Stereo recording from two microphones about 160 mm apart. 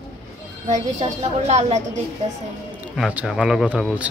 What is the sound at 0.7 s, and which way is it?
A woman's voice, 45° right (ahead or behind).